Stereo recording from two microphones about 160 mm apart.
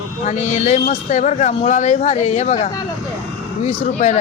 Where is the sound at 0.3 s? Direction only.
50° left (ahead or behind).